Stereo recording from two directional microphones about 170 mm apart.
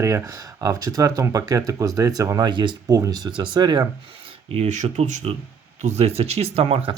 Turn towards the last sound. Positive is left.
turn(degrees=-35)  # may be behind; listen again after turning